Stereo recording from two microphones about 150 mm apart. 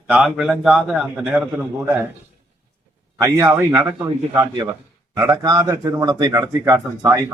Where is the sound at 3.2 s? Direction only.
20° right (ahead or behind).